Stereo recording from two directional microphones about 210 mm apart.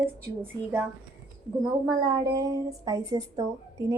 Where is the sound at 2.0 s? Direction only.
15° right (ahead or behind).